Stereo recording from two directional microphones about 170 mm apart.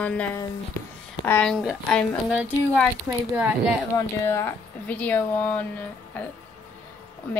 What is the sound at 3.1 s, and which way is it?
Speech, 15° right (ahead or behind).